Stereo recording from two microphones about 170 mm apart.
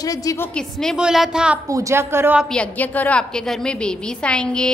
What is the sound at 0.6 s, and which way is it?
A woman's voice, 5° left (ahead or behind).